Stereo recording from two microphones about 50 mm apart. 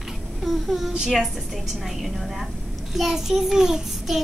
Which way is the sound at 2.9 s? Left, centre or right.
Centre.